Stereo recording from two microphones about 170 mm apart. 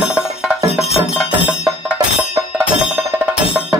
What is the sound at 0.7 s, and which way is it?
Music, 35° left (ahead or behind).